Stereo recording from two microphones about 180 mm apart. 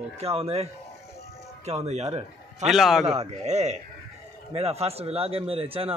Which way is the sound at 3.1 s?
35° right (ahead or behind).